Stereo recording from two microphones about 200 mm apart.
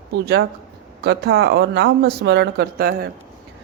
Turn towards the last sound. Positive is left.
turn(degrees=-50)  # may be behind; listen again after turning